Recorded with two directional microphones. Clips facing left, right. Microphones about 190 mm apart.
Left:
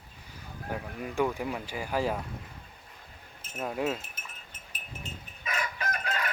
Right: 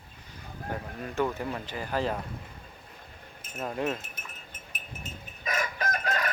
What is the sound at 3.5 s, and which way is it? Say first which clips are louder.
Speech: even; 5° left (ahead or behind).